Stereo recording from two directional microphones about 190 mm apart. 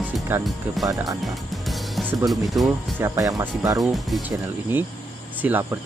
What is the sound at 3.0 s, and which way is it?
Speech, 15° right (ahead or behind).